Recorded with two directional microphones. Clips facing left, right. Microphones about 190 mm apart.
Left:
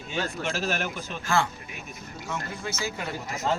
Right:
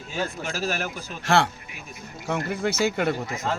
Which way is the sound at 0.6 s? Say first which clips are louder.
Right 4 dB; 40° right (ahead or behind).